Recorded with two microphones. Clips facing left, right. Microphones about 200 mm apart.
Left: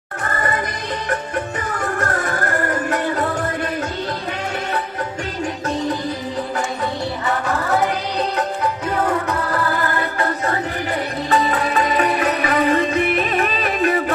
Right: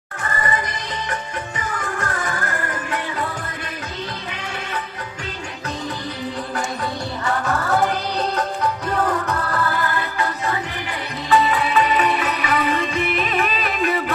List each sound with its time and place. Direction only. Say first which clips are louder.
0.3 s music: left 2 dB; 45° left (ahead or behind)
1.8 s music: left 6 dB; 45° left (ahead or behind)
10.1 s music: left 3 dB; 45° left (ahead or behind)